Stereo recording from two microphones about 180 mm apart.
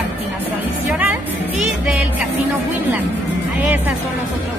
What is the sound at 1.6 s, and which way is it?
Music, 5° right (ahead or behind).